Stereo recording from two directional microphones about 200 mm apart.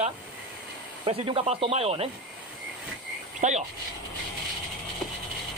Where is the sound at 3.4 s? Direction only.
35° right (ahead or behind).